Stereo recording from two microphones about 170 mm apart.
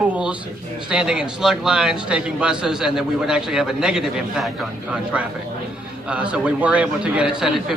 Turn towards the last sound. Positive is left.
turn(degrees=-5)  # may be behind; listen again after turning